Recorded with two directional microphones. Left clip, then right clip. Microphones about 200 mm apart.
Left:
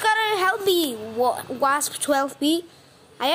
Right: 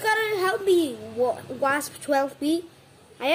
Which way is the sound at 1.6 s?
10° left (ahead or behind).